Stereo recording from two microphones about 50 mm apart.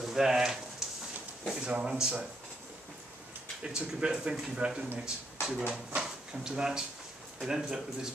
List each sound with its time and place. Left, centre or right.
0.0 s a sound: centre
1.7 s speech: centre
3.6 s speech: centre